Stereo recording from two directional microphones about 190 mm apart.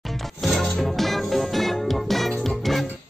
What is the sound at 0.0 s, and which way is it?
Music, centre (ahead or behind).